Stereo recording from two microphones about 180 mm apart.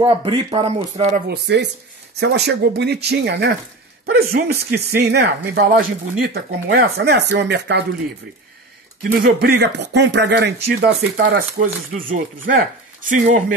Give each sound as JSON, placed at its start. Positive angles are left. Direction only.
{"t": 0.0, "sound": "speech", "side_deg": -30}
{"t": 1.2, "sound": "speech", "side_deg": -65}
{"t": 5.5, "sound": "speech", "side_deg": -55}
{"t": 9.0, "sound": "speech", "side_deg": -60}
{"t": 11.6, "sound": "speech", "side_deg": -50}
{"t": 12.5, "sound": "speech", "side_deg": -65}
{"t": 13.1, "sound": "speech", "side_deg": -45}